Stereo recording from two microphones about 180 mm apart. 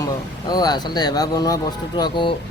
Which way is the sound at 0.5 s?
20° left (ahead or behind).